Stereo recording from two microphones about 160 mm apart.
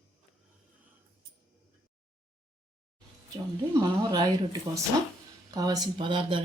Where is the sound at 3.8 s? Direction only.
25° right (ahead or behind).